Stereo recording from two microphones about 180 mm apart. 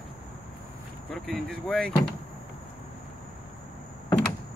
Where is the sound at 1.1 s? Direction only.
Centre (ahead or behind).